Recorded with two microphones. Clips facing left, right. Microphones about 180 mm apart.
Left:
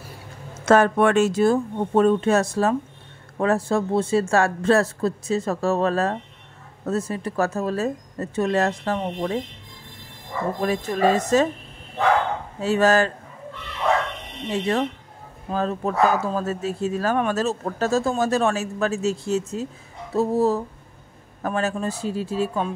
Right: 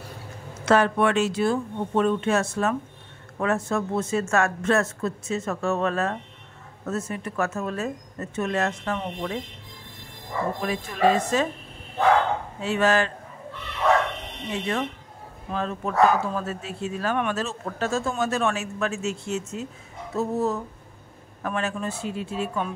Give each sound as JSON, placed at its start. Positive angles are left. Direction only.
{"t": 0.6, "sound": "speech", "side_deg": 45}
{"t": 10.6, "sound": "speech", "side_deg": 40}
{"t": 12.5, "sound": "speech", "side_deg": 40}
{"t": 14.5, "sound": "speech", "side_deg": 35}